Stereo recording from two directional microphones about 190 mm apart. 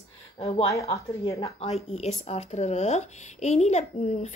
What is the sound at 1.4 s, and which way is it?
Speech, 35° left (ahead or behind).